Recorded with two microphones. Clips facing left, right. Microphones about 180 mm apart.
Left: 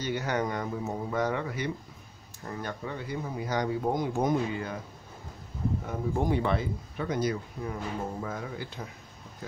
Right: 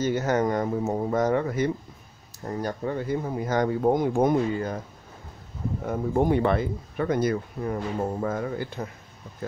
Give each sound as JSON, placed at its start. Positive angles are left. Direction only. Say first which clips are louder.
{"t": 0.0, "sound": "speech", "louder": "right 6 dB", "side_deg": -45}
{"t": 5.9, "sound": "speech", "louder": "right 7 dB", "side_deg": -55}